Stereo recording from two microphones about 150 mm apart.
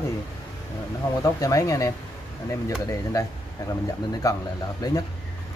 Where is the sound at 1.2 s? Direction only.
25° left (ahead or behind).